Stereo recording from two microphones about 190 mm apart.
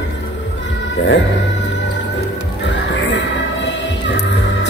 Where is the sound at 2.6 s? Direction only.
70° left (ahead or behind).